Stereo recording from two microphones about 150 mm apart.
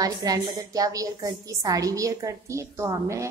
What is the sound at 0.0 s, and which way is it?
A woman's voice, 25° right (ahead or behind).